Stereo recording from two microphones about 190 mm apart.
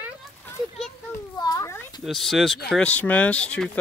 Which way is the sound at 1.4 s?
20° left (ahead or behind).